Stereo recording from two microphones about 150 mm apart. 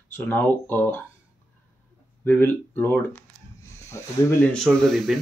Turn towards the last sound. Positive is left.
turn(degrees=0)  # may be behind; listen again after turning